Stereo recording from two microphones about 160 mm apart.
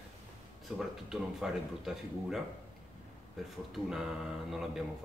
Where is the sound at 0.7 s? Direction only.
5° right (ahead or behind).